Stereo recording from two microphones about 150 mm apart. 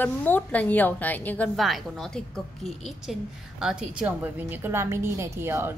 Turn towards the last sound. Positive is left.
turn(degrees=-15)  # may be behind; listen again after turning